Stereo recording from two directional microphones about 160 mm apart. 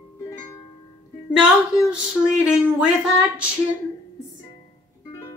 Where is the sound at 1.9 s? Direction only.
5° right (ahead or behind).